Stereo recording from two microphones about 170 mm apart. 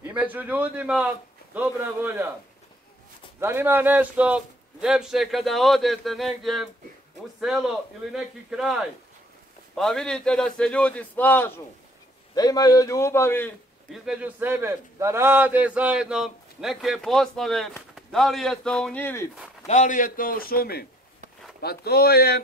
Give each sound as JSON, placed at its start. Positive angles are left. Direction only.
{"t": 0.0, "sound": "a man's voice", "side_deg": -10}
{"t": 3.3, "sound": "a man's voice", "side_deg": -15}
{"t": 12.4, "sound": "a man's voice", "side_deg": 20}
{"t": 13.9, "sound": "a man's voice", "side_deg": -5}
{"t": 19.6, "sound": "a man's voice", "side_deg": 45}